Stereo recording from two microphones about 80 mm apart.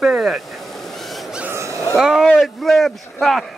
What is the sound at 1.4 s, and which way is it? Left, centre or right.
Dog, right.